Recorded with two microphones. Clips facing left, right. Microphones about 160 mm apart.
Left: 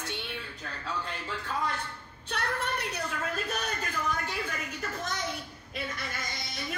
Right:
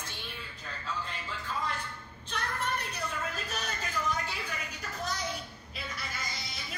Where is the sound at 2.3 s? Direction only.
70° left (ahead or behind); by 4.3 s 55° left (ahead or behind).